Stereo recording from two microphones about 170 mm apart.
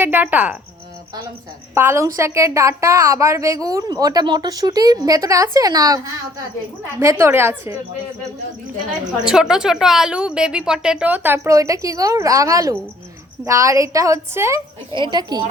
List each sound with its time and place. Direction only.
0.0 s a woman's voice: 10° right (ahead or behind)
1.7 s a woman's voice: 15° right (ahead or behind)
7.0 s a woman's voice: 15° right (ahead or behind)
9.2 s a woman's voice: 5° right (ahead or behind); by 15.4 s 25° right (ahead or behind)